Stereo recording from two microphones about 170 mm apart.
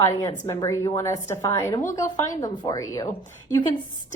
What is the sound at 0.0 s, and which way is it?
A woman's voice, 20° left (ahead or behind).